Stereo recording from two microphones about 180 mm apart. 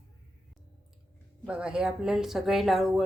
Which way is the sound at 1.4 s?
5° right (ahead or behind).